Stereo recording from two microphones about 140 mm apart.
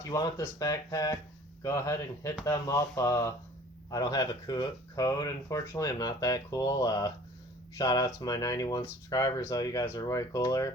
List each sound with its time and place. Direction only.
0.1 s speech: 25° left (ahead or behind)